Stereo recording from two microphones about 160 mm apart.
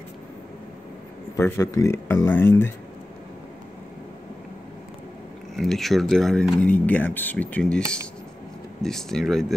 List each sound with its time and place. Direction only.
1.3 s speech: 20° left (ahead or behind)
5.6 s speech: centre (ahead or behind)
8.8 s speech: 5° left (ahead or behind)